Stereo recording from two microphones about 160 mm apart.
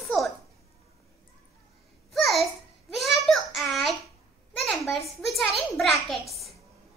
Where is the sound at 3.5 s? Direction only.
Centre (ahead or behind).